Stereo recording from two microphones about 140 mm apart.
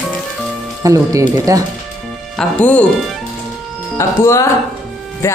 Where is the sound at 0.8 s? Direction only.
25° right (ahead or behind).